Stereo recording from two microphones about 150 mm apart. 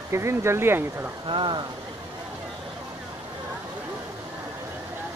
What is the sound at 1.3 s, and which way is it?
Speech, 30° right (ahead or behind).